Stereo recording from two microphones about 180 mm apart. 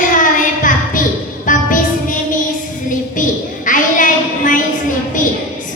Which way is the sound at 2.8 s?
45° left (ahead or behind).